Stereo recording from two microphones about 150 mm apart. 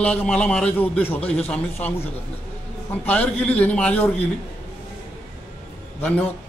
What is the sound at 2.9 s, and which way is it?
A man's voice, 10° left (ahead or behind).